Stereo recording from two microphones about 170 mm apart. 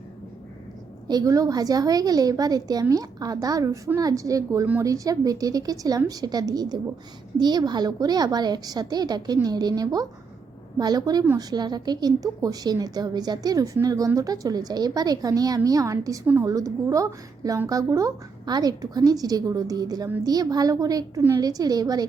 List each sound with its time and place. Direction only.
1.0 s a woman's voice: 20° right (ahead or behind)